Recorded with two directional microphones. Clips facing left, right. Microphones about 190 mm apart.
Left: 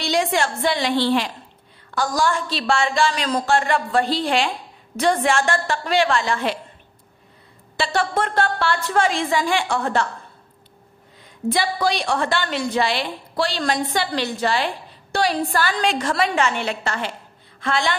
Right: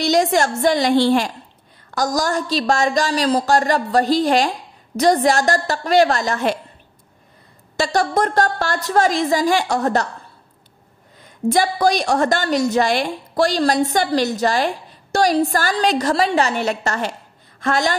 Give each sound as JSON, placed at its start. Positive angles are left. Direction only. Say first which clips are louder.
{"t": 0.0, "sound": "a woman's voice", "louder": "right 4 dB", "side_deg": -45}
{"t": 7.7, "sound": "a woman's voice", "louder": "right 3 dB", "side_deg": -40}
{"t": 11.4, "sound": "a woman's voice", "louder": "right 5 dB", "side_deg": -45}